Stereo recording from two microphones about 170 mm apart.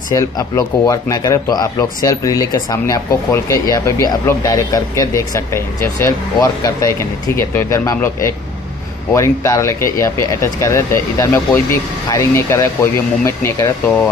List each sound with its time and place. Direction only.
0.1 s speech: 20° left (ahead or behind)